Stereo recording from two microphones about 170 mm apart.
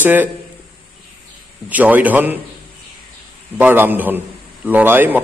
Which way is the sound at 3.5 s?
10° right (ahead or behind).